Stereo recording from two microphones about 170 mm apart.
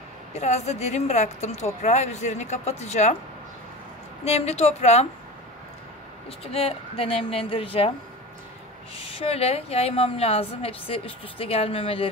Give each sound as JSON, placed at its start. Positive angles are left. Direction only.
{"t": 0.3, "sound": "a woman's voice", "side_deg": 40}
{"t": 4.2, "sound": "a woman's voice", "side_deg": 40}
{"t": 6.4, "sound": "a woman's voice", "side_deg": 35}
{"t": 9.0, "sound": "a woman's voice", "side_deg": 35}